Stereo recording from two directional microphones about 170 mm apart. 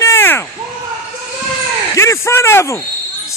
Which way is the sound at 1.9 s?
15° left (ahead or behind).